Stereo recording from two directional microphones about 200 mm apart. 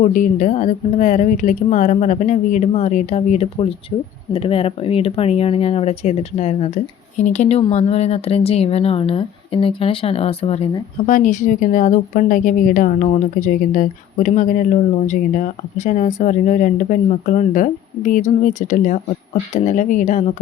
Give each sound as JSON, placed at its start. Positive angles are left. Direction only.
{"t": 0.0, "sound": "speech", "side_deg": 40}